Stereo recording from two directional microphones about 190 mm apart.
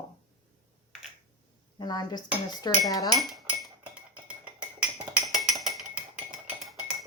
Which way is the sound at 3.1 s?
Centre (ahead or behind).